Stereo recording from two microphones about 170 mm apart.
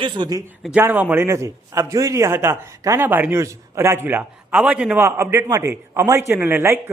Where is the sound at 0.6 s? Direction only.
5° right (ahead or behind).